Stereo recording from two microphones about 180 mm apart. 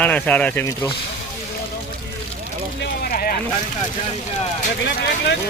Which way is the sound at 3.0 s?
50° left (ahead or behind).